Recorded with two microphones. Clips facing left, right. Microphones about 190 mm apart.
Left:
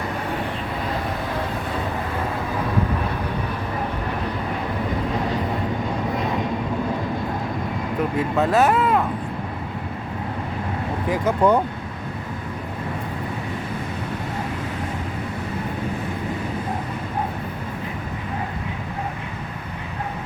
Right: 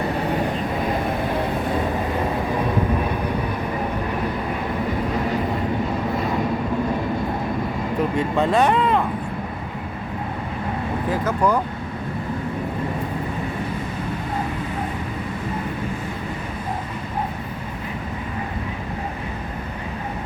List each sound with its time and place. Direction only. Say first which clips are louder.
8.4 s speech: even; 5° left (ahead or behind)
11.1 s speech: left 3 dB; 20° left (ahead or behind)